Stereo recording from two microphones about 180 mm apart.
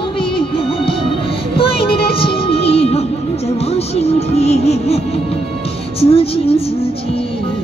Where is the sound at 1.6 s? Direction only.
30° left (ahead or behind).